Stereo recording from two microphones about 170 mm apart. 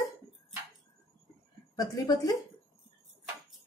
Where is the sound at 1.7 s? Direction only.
20° left (ahead or behind).